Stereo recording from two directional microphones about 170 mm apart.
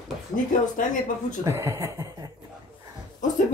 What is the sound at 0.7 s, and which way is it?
Speech, 50° left (ahead or behind).